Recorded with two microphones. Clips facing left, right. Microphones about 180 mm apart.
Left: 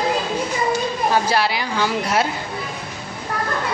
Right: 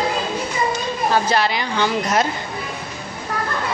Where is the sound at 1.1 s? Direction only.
10° left (ahead or behind).